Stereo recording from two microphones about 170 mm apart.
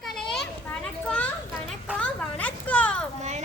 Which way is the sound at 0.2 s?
Centre (ahead or behind).